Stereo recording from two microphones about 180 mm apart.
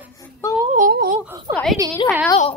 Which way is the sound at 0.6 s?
45° right (ahead or behind).